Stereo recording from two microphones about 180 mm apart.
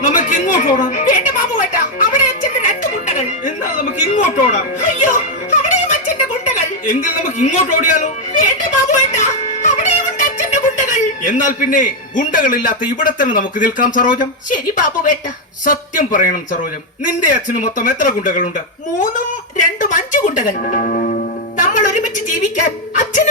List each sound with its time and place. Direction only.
0.0 s a sound: 45° left (ahead or behind)
4.1 s music: 45° left (ahead or behind)
6.5 s a sound: 45° left (ahead or behind)
10.2 s music: 45° left (ahead or behind)
13.0 s speech: 45° left (ahead or behind)
19.8 s music: 50° left (ahead or behind)
22.5 s speech: 45° left (ahead or behind)